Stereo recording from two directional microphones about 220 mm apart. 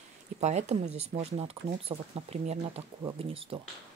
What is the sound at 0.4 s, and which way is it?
Speech, 30° right (ahead or behind).